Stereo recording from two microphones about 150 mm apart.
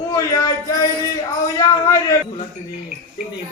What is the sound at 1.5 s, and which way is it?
Speech, 20° left (ahead or behind).